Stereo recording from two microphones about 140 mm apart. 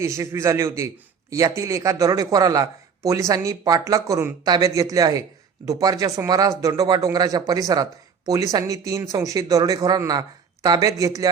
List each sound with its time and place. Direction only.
0.0 s speech: 20° right (ahead or behind)